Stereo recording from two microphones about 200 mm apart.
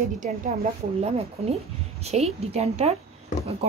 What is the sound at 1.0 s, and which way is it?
A woman's voice, 30° right (ahead or behind).